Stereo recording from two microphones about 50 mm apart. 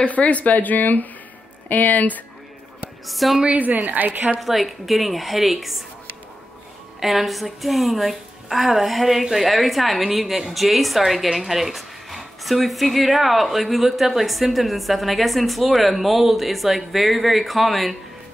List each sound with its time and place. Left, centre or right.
0.0 s speech: left
3.1 s speech: centre
3.4 s a woman's voice: right
4.4 s speech: centre
7.0 s speech: centre